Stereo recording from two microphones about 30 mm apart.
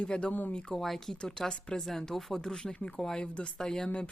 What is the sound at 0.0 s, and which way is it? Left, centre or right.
Speech, left.